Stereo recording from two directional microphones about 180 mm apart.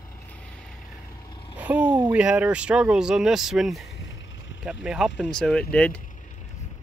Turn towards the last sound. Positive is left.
turn(degrees=5)  # may be behind; listen again after turning